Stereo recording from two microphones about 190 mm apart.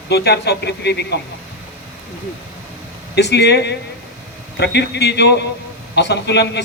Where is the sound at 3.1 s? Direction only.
60° left (ahead or behind).